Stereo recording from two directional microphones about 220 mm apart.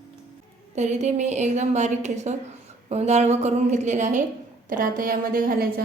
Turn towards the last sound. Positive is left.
turn(degrees=-40)  # may be behind; listen again after turning